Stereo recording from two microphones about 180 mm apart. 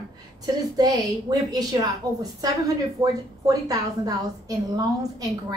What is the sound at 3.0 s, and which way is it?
A woman's voice, 20° right (ahead or behind).